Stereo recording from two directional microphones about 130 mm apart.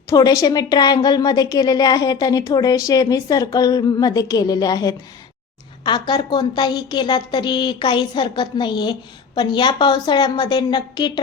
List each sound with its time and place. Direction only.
0.1 s a woman's voice: 30° left (ahead or behind)